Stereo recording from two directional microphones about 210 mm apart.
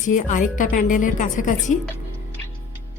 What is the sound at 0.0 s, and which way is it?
A woman's voice, 35° left (ahead or behind).